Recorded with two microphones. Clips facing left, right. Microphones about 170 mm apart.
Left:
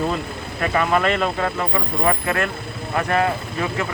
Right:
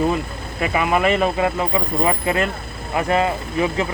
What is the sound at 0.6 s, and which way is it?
Speech, 10° right (ahead or behind).